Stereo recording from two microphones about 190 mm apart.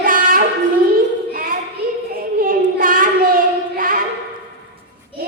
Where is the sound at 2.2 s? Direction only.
50° right (ahead or behind).